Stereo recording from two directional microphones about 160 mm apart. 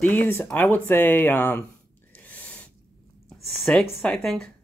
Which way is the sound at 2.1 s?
10° left (ahead or behind).